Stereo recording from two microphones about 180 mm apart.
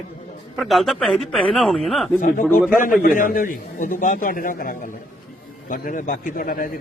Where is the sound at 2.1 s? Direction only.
50° left (ahead or behind).